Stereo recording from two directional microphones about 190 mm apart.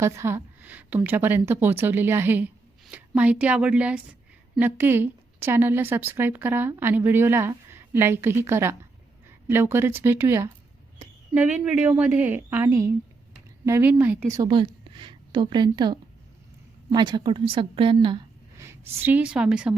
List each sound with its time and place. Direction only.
0.0 s a woman's voice: 15° right (ahead or behind)
18.5 s speech: 15° right (ahead or behind)